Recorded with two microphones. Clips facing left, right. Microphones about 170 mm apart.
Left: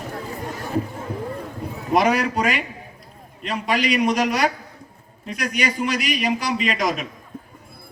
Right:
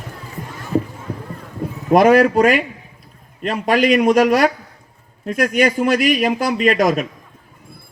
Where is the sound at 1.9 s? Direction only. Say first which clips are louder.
Right 8 dB; 50° right (ahead or behind).